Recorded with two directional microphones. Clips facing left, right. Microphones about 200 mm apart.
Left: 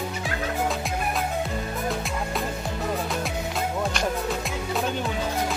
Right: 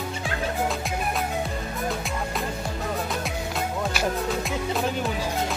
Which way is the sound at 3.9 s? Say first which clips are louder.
Right 1 dB; 5° right (ahead or behind).